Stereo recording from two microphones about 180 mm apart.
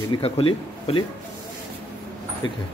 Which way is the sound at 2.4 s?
25° left (ahead or behind).